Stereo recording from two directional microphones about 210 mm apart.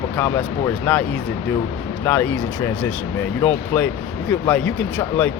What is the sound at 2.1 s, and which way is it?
Speech, 10° left (ahead or behind).